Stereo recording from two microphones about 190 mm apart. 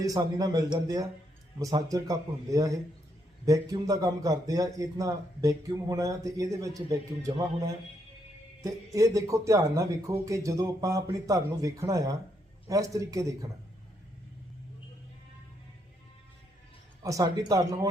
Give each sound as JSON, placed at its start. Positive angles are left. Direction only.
{"t": 0.0, "sound": "a man's voice", "side_deg": -20}
{"t": 17.0, "sound": "speech", "side_deg": -15}